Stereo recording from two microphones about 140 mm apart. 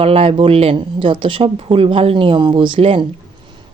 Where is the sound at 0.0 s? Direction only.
45° right (ahead or behind).